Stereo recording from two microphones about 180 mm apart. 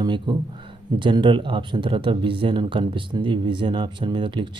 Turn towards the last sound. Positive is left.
turn(degrees=-25)  # may be behind; listen again after turning